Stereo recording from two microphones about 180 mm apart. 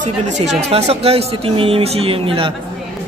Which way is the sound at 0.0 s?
40° right (ahead or behind).